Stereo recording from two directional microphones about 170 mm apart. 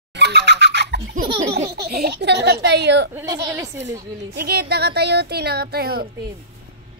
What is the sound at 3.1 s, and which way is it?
Speech, 20° right (ahead or behind).